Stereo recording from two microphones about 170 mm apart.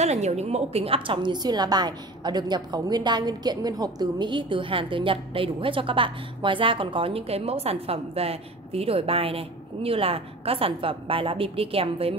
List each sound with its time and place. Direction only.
0.0 s a woman's voice: 40° right (ahead or behind)